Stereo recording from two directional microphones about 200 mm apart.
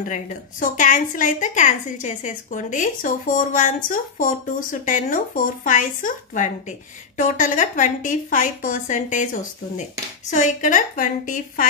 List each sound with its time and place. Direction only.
0.1 s a woman's voice: 40° left (ahead or behind)